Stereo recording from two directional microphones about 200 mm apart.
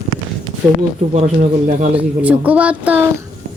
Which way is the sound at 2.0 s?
5° right (ahead or behind).